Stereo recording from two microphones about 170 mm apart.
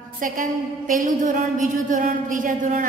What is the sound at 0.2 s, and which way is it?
A woman's voice, 55° right (ahead or behind).